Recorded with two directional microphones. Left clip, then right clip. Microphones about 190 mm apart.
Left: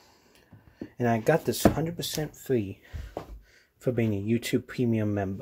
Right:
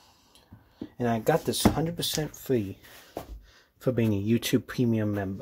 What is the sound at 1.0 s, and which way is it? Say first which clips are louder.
Speech: left 1 dB; 15° left (ahead or behind).